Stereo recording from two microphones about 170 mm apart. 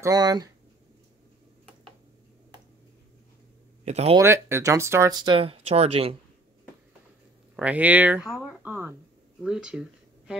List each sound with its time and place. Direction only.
0.0 s speech: 25° right (ahead or behind)
3.8 s speech: 40° right (ahead or behind)
4.2 s speech: 15° right (ahead or behind); by 6.1 s 35° right (ahead or behind)
7.5 s speech: 10° right (ahead or behind)
8.3 s a sound: centre (ahead or behind)
8.6 s a sound: 10° right (ahead or behind)
9.4 s speech: 5° right (ahead or behind)